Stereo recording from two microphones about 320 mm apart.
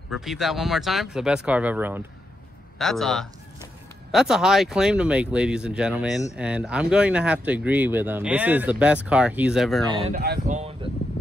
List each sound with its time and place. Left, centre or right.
0.1 s speech: centre
9.8 s speech: centre
10.2 s a sound: right